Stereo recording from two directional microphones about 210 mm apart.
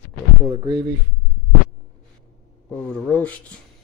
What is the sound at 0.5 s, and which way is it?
Speech, 20° right (ahead or behind).